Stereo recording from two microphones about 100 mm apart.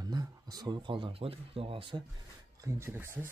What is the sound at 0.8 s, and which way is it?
Speech, 55° right (ahead or behind).